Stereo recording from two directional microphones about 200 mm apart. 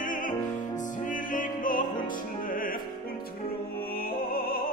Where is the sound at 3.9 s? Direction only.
50° left (ahead or behind).